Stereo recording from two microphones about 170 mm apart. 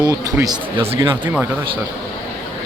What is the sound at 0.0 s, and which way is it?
A man's voice, 20° right (ahead or behind).